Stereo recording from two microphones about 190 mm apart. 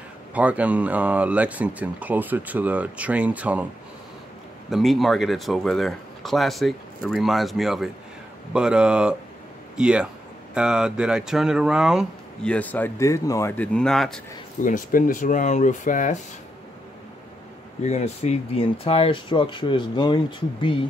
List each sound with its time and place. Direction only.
0.3 s speech: 5° right (ahead or behind)
4.6 s speech: centre (ahead or behind)
14.6 s speech: 45° left (ahead or behind)
17.8 s speech: 35° left (ahead or behind)